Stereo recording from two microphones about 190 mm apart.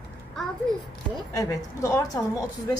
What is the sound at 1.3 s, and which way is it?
Speech, 15° left (ahead or behind).